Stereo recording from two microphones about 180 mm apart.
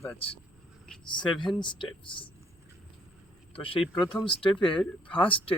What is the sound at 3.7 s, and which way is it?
Speech, 30° left (ahead or behind).